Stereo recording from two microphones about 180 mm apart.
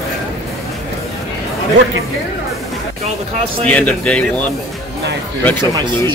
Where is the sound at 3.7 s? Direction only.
10° left (ahead or behind).